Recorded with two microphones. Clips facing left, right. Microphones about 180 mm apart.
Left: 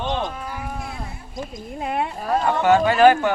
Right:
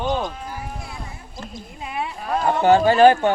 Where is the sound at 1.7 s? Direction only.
55° left (ahead or behind).